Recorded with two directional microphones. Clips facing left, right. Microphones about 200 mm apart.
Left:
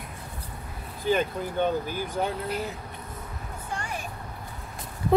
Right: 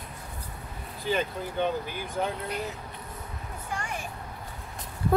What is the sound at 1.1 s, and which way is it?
Speech, 45° left (ahead or behind).